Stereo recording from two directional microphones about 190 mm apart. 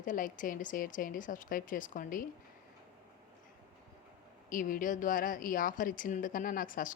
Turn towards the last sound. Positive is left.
turn(degrees=45)  # may be behind; listen again after turning